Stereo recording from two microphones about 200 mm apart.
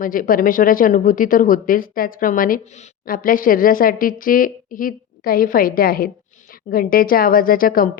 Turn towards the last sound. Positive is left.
turn(degrees=45)  # may be behind; listen again after turning